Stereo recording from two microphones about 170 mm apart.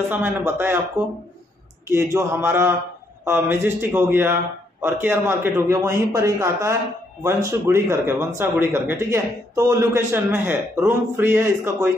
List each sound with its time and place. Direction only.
0.1 s a man's voice: 10° right (ahead or behind)